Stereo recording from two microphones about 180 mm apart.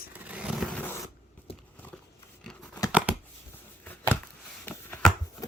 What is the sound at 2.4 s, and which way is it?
Scissors, 5° left (ahead or behind).